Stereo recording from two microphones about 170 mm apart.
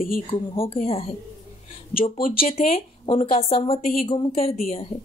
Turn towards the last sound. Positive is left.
turn(degrees=35)  # may be behind; listen again after turning